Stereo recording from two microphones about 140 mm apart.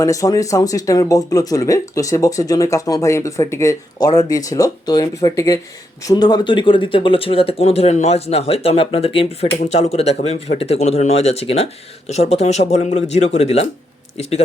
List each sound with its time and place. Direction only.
0.0 s speech: 25° left (ahead or behind); by 14.4 s 50° left (ahead or behind)